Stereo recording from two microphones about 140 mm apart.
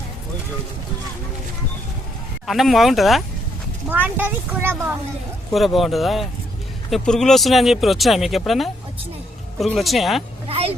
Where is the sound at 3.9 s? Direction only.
15° right (ahead or behind).